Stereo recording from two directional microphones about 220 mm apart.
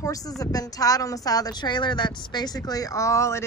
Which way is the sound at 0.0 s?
15° left (ahead or behind).